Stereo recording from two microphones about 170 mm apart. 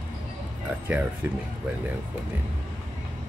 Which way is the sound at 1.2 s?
10° right (ahead or behind).